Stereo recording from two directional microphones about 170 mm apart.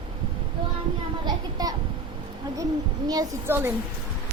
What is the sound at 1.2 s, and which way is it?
Speech, 20° right (ahead or behind).